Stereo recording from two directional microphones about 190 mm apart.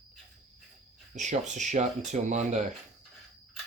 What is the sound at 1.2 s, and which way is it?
Speech, 40° right (ahead or behind).